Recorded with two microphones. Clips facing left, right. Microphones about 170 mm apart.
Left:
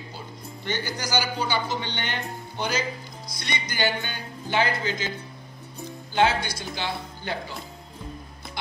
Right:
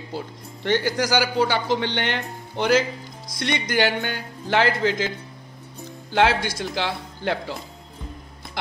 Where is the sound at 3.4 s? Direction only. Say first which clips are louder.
Right 6 dB; 80° right.